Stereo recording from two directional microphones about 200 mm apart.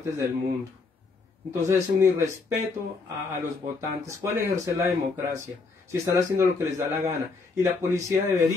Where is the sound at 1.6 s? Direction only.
15° right (ahead or behind).